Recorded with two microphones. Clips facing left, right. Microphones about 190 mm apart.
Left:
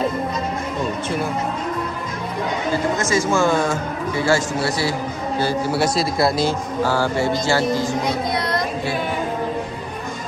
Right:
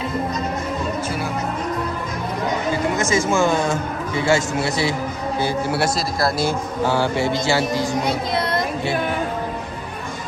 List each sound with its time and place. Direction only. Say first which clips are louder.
3.1 s mantra: left 1 dB; 20° right (ahead or behind)
4.3 s a man's voice: right 1 dB; 20° right (ahead or behind)
5.9 s speech: left 3 dB; centre (ahead or behind)
6.8 s mantra: even; 20° right (ahead or behind)